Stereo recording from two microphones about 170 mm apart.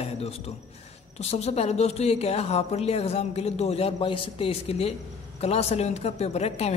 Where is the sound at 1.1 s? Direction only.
40° left (ahead or behind).